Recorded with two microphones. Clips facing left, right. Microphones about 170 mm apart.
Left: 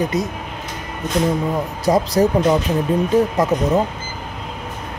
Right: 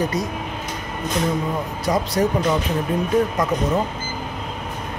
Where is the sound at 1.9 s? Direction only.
30° left (ahead or behind).